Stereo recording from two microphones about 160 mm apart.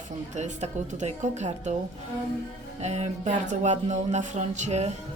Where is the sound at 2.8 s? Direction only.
45° right (ahead or behind).